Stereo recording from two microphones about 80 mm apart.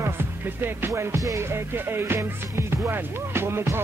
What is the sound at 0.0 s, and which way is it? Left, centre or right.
Music, right.